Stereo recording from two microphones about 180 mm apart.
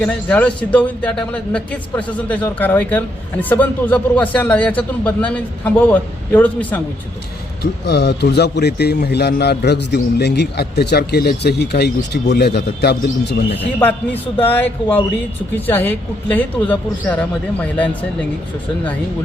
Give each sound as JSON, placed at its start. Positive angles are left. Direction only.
{"t": 0.0, "sound": "a man's voice", "side_deg": 5}
{"t": 7.6, "sound": "speech", "side_deg": 65}
{"t": 13.6, "sound": "a man's voice", "side_deg": 10}